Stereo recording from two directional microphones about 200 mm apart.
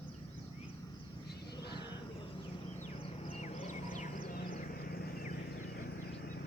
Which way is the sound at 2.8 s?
35° left (ahead or behind).